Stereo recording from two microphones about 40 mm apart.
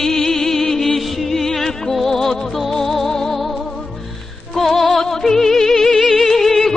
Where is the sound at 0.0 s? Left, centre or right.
Centre.